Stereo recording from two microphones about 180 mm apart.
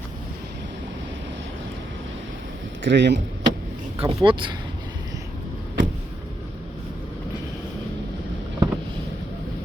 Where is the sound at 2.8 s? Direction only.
80° right.